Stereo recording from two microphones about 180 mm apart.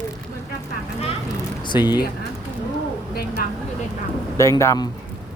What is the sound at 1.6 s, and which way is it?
Speech, 25° left (ahead or behind).